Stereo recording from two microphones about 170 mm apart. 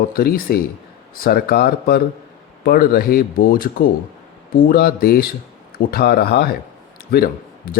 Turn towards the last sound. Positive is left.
turn(degrees=60)  # may be behind; listen again after turning